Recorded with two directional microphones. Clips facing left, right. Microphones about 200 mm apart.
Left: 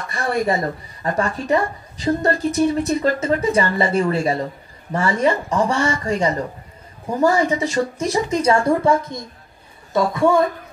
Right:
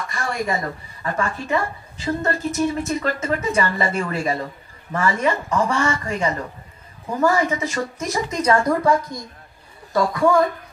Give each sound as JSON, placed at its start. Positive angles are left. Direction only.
{"t": 0.1, "sound": "a woman's voice", "side_deg": 35}